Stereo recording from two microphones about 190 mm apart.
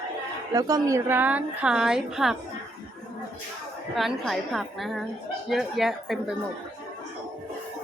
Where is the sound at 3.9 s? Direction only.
Centre (ahead or behind).